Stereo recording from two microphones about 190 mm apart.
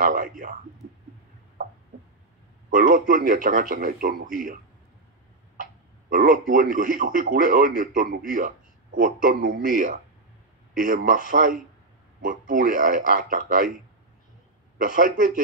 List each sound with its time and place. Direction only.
0.0 s a man's voice: 45° right (ahead or behind)
2.7 s a man's voice: 45° right (ahead or behind)
5.6 s a man's voice: 45° right (ahead or behind)
14.8 s a man's voice: 45° right (ahead or behind)